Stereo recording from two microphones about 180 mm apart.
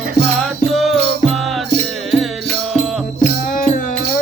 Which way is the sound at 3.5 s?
50° left (ahead or behind).